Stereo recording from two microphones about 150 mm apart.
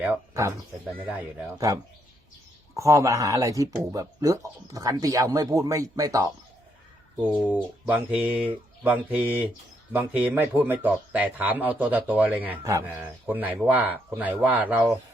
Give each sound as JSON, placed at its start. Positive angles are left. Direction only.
{"t": 1.1, "sound": "a man's voice", "side_deg": -10}
{"t": 2.7, "sound": "speech", "side_deg": -20}
{"t": 7.2, "sound": "a man's voice", "side_deg": -10}